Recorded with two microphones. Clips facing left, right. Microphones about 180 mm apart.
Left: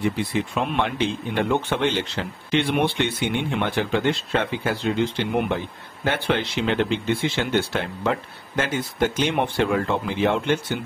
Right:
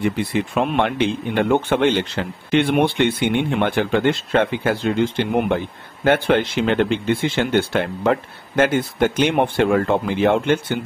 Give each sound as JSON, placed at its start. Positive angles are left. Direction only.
{"t": 0.2, "sound": "speech", "side_deg": -55}